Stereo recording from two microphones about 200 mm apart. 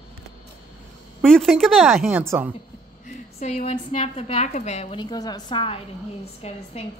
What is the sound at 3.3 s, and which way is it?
A woman's voice, 35° left (ahead or behind).